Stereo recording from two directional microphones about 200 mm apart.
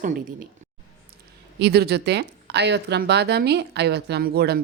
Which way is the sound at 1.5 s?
55° right (ahead or behind).